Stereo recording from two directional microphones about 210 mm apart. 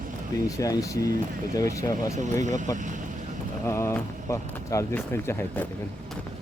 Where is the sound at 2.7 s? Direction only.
35° right (ahead or behind).